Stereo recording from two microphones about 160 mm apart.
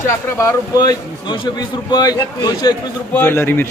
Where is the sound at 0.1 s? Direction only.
15° left (ahead or behind).